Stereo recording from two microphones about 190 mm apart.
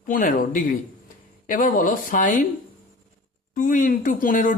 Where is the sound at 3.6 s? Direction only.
45° left (ahead or behind).